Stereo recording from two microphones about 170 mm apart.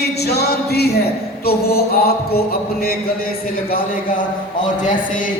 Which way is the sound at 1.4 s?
65° left (ahead or behind).